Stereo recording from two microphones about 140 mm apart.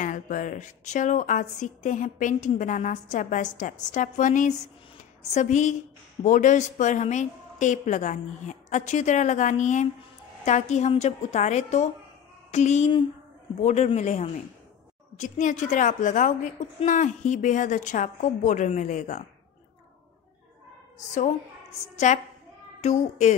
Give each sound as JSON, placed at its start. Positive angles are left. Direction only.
{"t": 0.0, "sound": "a woman's voice", "side_deg": 70}
{"t": 21.9, "sound": "a woman's voice", "side_deg": 55}